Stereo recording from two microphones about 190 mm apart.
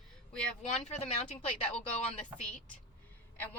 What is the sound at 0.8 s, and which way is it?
Speech, 35° left (ahead or behind).